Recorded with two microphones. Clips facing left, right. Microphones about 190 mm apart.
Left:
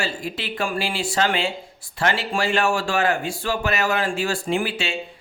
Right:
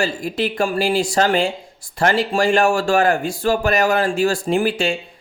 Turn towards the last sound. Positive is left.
turn(degrees=-45)  # may be behind; listen again after turning